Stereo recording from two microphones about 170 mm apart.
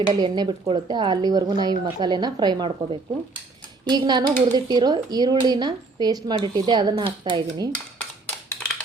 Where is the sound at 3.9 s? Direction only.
25° right (ahead or behind).